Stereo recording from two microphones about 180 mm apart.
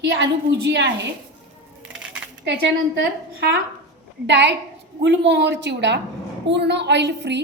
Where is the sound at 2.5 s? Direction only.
70° right (ahead or behind).